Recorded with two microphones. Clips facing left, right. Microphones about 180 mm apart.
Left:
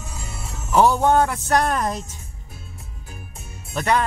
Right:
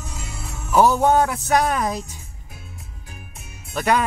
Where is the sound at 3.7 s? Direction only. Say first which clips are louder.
Right 1 dB; 5° right (ahead or behind).